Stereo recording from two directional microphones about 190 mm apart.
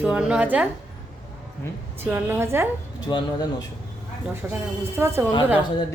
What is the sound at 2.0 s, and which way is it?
Speech, 10° right (ahead or behind).